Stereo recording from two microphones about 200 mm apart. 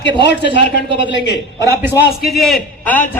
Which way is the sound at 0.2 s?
60° left (ahead or behind).